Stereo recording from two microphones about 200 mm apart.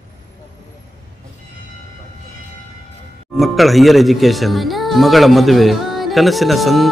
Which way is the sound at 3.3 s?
Centre (ahead or behind).